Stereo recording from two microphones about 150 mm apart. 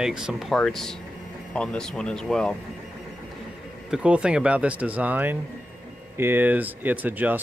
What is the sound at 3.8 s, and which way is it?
Speech, 5° right (ahead or behind).